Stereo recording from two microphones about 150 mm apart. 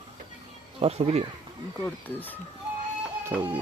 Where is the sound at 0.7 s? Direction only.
45° right (ahead or behind).